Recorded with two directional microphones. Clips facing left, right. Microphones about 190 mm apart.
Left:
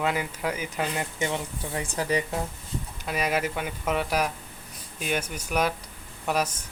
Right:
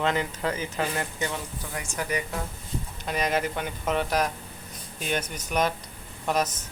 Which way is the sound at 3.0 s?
5° left (ahead or behind).